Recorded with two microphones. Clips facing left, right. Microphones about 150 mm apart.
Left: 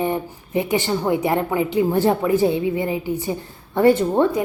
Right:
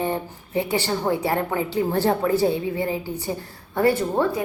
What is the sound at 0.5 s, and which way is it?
A woman's voice, 20° left (ahead or behind).